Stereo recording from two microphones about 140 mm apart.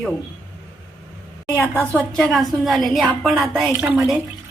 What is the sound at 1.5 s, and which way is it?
A woman's voice, 15° left (ahead or behind).